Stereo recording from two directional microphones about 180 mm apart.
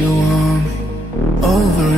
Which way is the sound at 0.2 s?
Centre (ahead or behind).